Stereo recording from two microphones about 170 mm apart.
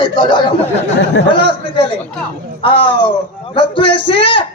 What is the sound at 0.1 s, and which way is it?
A man's voice, 25° left (ahead or behind).